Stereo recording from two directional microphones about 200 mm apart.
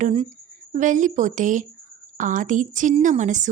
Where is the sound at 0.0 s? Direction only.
30° right (ahead or behind).